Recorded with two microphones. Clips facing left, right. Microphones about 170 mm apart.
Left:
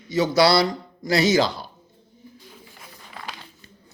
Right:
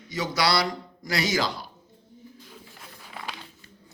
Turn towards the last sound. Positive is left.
turn(degrees=-5)  # may be behind; listen again after turning